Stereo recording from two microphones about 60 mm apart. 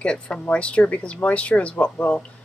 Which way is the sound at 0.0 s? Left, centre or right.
Centre.